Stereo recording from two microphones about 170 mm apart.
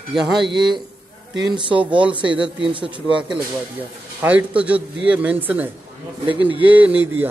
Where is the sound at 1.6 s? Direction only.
30° right (ahead or behind).